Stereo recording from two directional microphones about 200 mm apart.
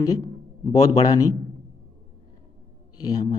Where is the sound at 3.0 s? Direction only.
20° left (ahead or behind).